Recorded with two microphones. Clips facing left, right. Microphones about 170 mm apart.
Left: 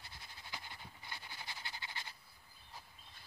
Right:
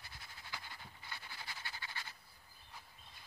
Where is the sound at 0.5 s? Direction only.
20° left (ahead or behind).